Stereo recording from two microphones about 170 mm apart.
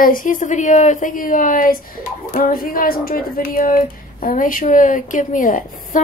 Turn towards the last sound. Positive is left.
turn(degrees=50)  # may be behind; listen again after turning